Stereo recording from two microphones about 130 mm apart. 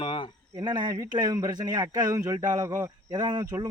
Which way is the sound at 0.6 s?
35° right (ahead or behind).